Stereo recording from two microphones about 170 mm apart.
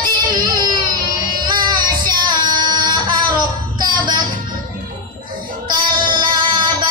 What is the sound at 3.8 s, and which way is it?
Music, 25° right (ahead or behind).